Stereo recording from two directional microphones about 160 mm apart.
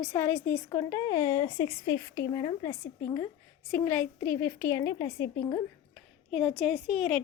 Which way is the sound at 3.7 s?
10° left (ahead or behind).